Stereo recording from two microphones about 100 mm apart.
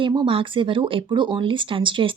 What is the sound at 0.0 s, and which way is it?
A woman's voice, 50° right (ahead or behind).